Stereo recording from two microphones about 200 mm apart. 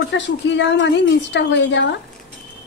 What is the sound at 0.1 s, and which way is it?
A woman's voice, 65° left (ahead or behind).